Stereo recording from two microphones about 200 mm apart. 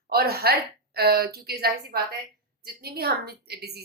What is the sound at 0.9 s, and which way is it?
A woman's voice, 50° right (ahead or behind).